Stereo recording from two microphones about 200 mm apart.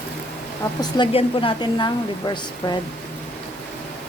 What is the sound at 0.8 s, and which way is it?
A woman's voice, 25° left (ahead or behind).